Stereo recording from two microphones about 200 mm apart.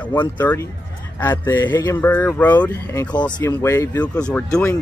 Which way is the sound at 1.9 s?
10° left (ahead or behind).